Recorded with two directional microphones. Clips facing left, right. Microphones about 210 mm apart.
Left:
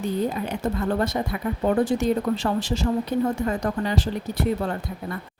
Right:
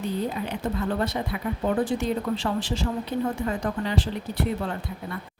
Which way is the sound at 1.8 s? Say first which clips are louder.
Left 4 dB; 40° left (ahead or behind).